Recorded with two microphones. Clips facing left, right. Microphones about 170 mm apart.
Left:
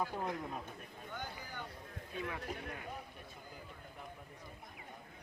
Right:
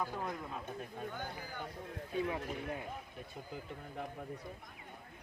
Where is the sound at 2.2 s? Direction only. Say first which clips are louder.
Right 4 dB; 20° right (ahead or behind).